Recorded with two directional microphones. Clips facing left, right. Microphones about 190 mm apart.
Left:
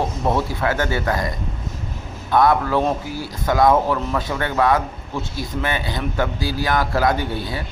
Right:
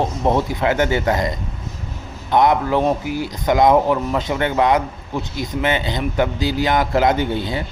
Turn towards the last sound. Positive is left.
turn(degrees=-20)  # may be behind; listen again after turning